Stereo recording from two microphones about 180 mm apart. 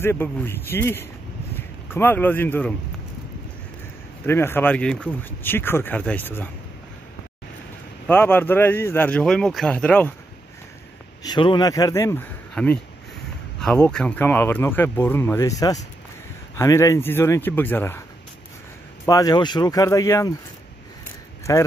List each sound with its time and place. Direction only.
0.0 s speech: 10° left (ahead or behind)
4.3 s speech: 15° left (ahead or behind)
8.1 s speech: 10° left (ahead or behind)
11.2 s speech: 25° left (ahead or behind)
19.0 s speech: 20° left (ahead or behind)
21.5 s speech: 20° left (ahead or behind)